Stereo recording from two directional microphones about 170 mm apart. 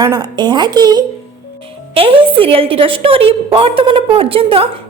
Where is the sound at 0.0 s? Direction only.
20° right (ahead or behind).